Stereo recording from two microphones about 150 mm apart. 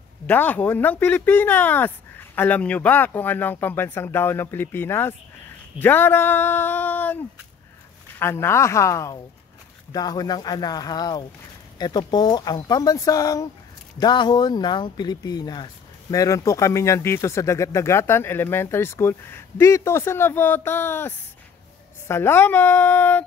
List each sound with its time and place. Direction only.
0.3 s speech: 10° left (ahead or behind)
8.2 s speech: 15° left (ahead or behind)